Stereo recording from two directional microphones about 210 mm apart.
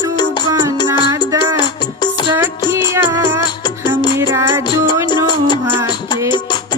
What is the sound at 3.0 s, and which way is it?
Music, 10° right (ahead or behind).